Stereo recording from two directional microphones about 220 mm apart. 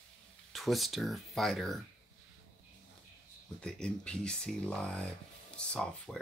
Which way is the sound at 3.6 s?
5° left (ahead or behind).